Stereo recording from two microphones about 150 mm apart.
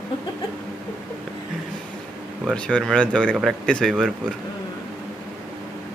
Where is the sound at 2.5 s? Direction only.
5° left (ahead or behind).